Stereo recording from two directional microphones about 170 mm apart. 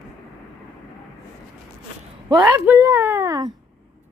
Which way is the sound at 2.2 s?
15° right (ahead or behind).